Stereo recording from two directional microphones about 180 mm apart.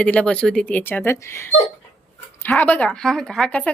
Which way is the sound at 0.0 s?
5° left (ahead or behind).